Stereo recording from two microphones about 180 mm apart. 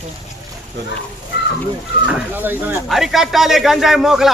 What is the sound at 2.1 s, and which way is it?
Speech, 10° right (ahead or behind).